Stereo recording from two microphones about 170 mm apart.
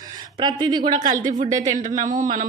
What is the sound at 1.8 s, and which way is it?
Speech, 50° right (ahead or behind).